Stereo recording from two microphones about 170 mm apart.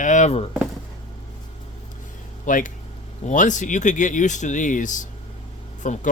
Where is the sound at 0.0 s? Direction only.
45° left (ahead or behind).